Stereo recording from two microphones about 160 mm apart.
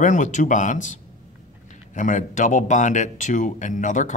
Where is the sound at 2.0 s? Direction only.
50° left (ahead or behind).